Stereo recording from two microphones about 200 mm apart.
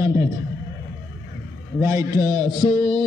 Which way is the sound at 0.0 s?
15° right (ahead or behind).